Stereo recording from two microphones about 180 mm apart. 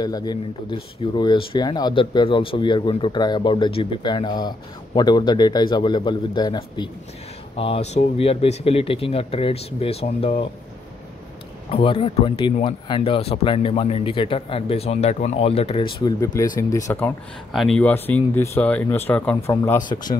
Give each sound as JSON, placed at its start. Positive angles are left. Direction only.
{"t": 0.0, "sound": "speech", "side_deg": 20}
{"t": 11.7, "sound": "speech", "side_deg": 30}
{"t": 17.5, "sound": "speech", "side_deg": 0}